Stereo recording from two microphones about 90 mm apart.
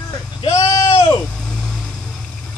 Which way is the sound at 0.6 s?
35° left (ahead or behind).